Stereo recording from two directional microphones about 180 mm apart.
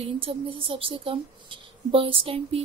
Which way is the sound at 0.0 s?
30° right (ahead or behind).